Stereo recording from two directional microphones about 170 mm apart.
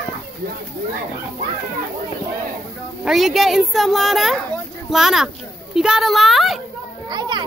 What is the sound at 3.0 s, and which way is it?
A child's voice, centre (ahead or behind).